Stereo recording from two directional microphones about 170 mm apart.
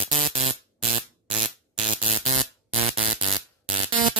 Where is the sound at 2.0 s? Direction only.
40° right (ahead or behind).